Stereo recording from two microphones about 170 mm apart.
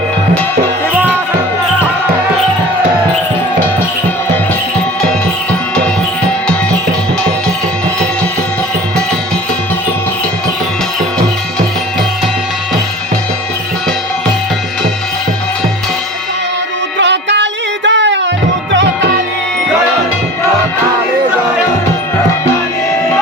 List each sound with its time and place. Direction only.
17.0 s music: 90° right